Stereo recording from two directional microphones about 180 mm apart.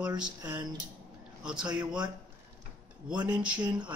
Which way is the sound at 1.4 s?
5° right (ahead or behind).